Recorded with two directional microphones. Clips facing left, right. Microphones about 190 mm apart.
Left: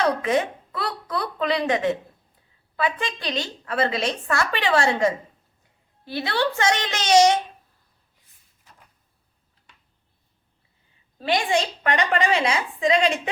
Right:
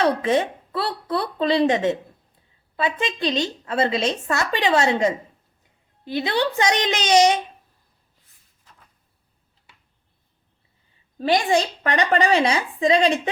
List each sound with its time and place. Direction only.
0.0 s a woman's voice: 30° right (ahead or behind); by 7.3 s 15° right (ahead or behind)
11.2 s a woman's voice: 40° right (ahead or behind)